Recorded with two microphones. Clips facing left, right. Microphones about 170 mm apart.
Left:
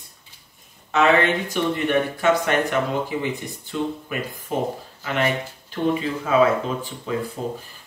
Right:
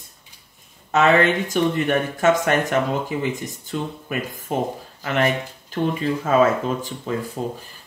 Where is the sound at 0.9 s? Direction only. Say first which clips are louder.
Right 1 dB; 45° right (ahead or behind).